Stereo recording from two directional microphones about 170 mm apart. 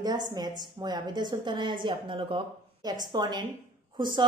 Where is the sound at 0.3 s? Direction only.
25° right (ahead or behind).